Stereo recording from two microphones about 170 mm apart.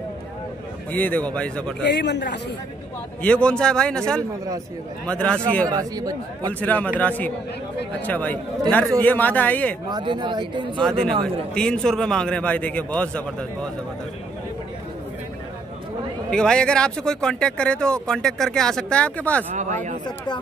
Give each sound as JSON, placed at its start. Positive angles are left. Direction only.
{"t": 0.9, "sound": "a man's voice", "side_deg": 10}
{"t": 1.8, "sound": "a man's voice", "side_deg": 90}
{"t": 3.2, "sound": "speech", "side_deg": 5}
{"t": 5.0, "sound": "speech", "side_deg": 5}
{"t": 5.7, "sound": "a man's voice", "side_deg": -20}
{"t": 6.6, "sound": "a man's voice", "side_deg": 10}
{"t": 9.8, "sound": "a man's voice", "side_deg": -25}
{"t": 10.8, "sound": "speech", "side_deg": 5}
{"t": 16.3, "sound": "speech", "side_deg": 5}
{"t": 19.5, "sound": "speech", "side_deg": -50}